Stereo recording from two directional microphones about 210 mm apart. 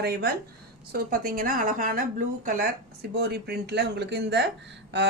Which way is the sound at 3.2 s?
50° right (ahead or behind).